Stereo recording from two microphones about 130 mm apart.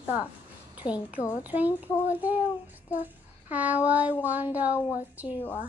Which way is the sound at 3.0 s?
10° right (ahead or behind).